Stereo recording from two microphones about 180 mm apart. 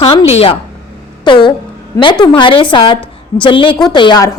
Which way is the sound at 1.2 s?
25° left (ahead or behind).